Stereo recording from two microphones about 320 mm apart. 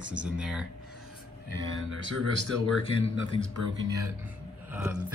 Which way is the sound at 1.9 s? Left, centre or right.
Left.